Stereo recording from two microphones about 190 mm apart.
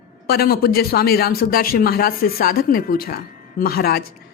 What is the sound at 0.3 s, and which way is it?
A woman's voice, 55° left (ahead or behind).